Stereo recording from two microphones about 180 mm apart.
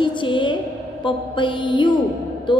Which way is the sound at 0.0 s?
25° left (ahead or behind).